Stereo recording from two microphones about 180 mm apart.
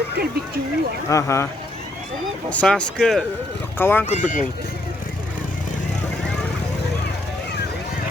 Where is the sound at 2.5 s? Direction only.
5° left (ahead or behind).